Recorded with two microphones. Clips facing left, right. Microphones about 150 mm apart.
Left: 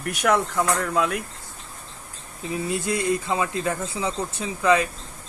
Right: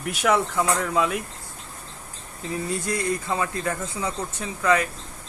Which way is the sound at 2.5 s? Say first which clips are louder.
Left 2 dB; 20° left (ahead or behind).